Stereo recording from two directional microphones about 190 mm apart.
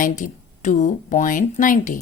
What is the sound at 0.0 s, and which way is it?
Speech, 40° left (ahead or behind).